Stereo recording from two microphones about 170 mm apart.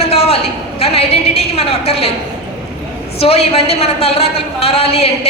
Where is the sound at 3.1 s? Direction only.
35° left (ahead or behind).